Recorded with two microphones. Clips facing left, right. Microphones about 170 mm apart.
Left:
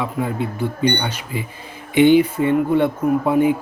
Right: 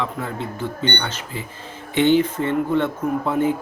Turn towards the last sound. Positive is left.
turn(degrees=10)  # may be behind; listen again after turning